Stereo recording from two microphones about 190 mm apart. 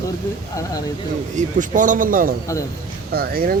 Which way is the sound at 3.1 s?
50° right (ahead or behind).